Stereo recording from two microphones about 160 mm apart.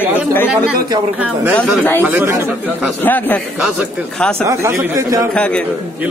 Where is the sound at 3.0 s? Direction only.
10° left (ahead or behind).